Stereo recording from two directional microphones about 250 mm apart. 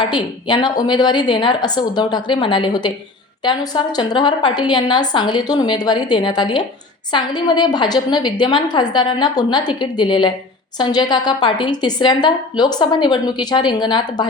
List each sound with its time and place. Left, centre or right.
0.0 s a woman's voice: centre